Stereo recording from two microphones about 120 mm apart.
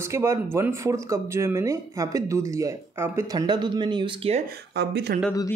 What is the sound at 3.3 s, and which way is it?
Speech, 35° right (ahead or behind).